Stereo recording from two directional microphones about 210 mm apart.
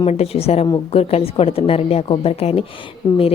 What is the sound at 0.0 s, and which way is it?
A woman's voice, 30° left (ahead or behind).